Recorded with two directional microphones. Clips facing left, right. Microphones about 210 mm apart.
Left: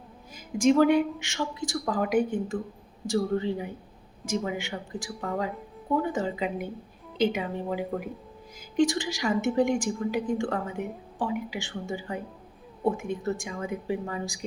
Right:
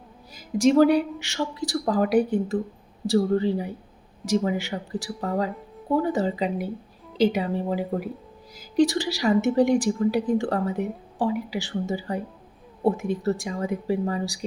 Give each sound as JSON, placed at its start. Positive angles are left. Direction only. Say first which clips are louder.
{"t": 0.3, "sound": "a woman's voice", "louder": "right 3 dB", "side_deg": -35}